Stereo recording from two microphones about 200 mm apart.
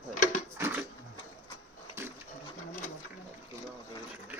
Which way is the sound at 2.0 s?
15° right (ahead or behind).